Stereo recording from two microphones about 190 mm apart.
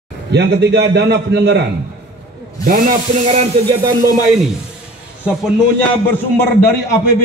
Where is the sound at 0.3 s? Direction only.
65° right (ahead or behind).